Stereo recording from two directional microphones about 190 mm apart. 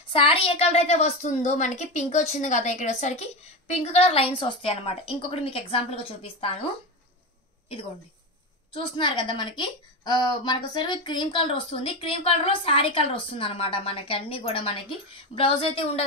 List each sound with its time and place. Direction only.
0.0 s a woman's voice: 30° left (ahead or behind)
8.7 s a woman's voice: 25° left (ahead or behind)